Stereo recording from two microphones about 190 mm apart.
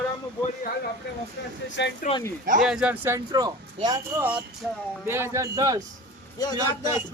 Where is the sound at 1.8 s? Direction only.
70° left (ahead or behind).